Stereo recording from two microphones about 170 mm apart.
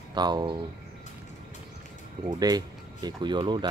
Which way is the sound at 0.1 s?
25° right (ahead or behind).